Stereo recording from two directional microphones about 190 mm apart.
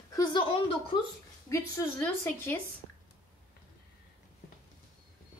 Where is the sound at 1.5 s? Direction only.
10° left (ahead or behind).